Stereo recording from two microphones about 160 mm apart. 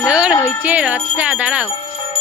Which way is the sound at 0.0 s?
5° right (ahead or behind).